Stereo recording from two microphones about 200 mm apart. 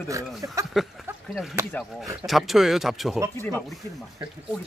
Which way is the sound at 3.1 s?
15° right (ahead or behind).